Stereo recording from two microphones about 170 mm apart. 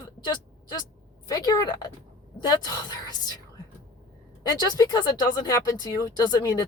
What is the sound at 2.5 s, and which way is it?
Speech, 25° left (ahead or behind).